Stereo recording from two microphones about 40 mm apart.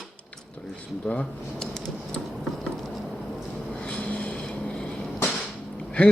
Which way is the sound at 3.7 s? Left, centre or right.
Left.